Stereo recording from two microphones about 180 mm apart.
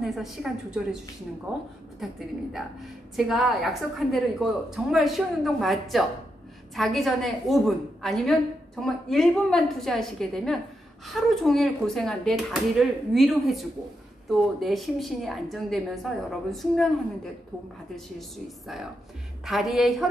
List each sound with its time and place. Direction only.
0.0 s a woman's voice: centre (ahead or behind)
2.0 s a woman's voice: centre (ahead or behind)
19.4 s a woman's voice: centre (ahead or behind)